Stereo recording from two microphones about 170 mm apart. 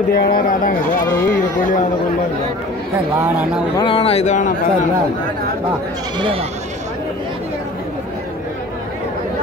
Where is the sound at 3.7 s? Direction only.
30° left (ahead or behind).